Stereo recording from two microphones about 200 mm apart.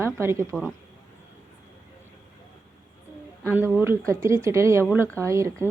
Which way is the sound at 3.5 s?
10° right (ahead or behind).